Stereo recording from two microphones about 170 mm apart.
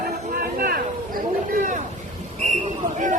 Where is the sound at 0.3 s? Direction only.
55° right (ahead or behind).